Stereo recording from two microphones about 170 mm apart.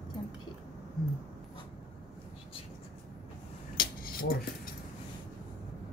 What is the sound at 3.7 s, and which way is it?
Cutlery, 60° left (ahead or behind).